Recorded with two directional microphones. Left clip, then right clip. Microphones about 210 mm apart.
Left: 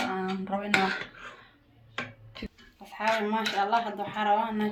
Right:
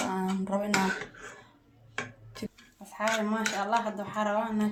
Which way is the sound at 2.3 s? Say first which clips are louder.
Right 1 dB; 50° right (ahead or behind).